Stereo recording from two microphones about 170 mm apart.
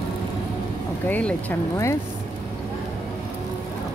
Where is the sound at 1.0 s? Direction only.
10° left (ahead or behind).